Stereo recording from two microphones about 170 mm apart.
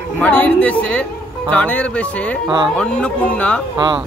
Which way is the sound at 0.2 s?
10° left (ahead or behind).